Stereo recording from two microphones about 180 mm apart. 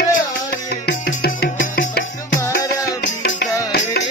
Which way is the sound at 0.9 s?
75° left (ahead or behind).